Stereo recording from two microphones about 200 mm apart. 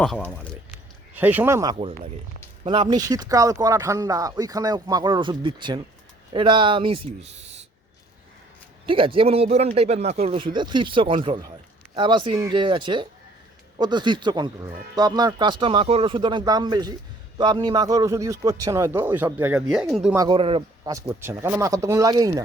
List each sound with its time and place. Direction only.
0.0 s speech: centre (ahead or behind)
1.1 s speech: 10° right (ahead or behind); by 7.6 s 30° right (ahead or behind)
8.9 s speech: 25° right (ahead or behind); by 20.1 s 5° right (ahead or behind)
20.1 s speech: 20° right (ahead or behind)
21.1 s speech: 10° right (ahead or behind)